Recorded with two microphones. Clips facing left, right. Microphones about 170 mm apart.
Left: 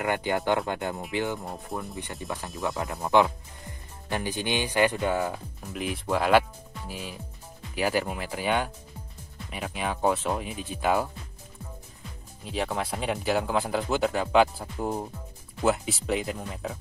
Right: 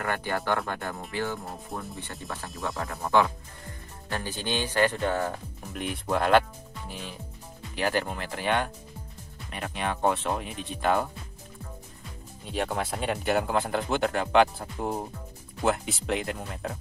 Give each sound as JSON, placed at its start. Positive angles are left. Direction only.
{"t": 0.0, "sound": "speech", "side_deg": 15}
{"t": 1.4, "sound": "speech", "side_deg": 0}
{"t": 2.8, "sound": "speech", "side_deg": 20}
{"t": 12.4, "sound": "speech", "side_deg": 0}